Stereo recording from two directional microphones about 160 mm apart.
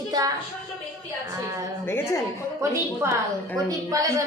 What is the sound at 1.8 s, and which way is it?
Speech, 15° left (ahead or behind).